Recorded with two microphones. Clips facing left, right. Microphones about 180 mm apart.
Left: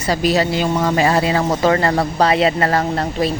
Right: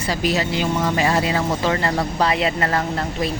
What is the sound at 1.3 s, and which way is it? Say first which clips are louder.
Speech: left 5 dB; 50° left (ahead or behind).